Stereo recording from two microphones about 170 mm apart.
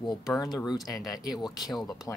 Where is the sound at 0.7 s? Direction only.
20° left (ahead or behind).